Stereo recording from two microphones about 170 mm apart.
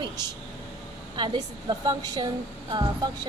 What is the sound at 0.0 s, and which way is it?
Vehicle, 25° right (ahead or behind).